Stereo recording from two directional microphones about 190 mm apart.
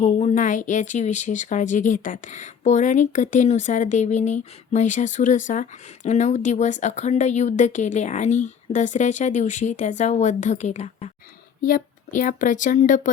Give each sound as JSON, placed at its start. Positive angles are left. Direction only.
{"t": 0.0, "sound": "speech", "side_deg": 40}